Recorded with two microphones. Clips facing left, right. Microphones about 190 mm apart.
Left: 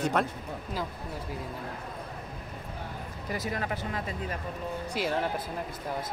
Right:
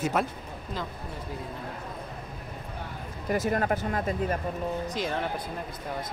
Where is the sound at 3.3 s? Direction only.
50° right (ahead or behind).